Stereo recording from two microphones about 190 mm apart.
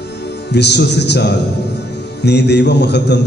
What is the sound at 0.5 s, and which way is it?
A man's voice, 65° left (ahead or behind).